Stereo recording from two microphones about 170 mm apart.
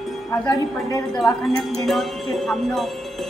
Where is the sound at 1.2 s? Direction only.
Centre (ahead or behind).